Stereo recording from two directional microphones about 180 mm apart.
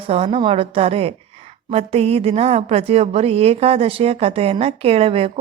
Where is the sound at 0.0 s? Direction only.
30° right (ahead or behind).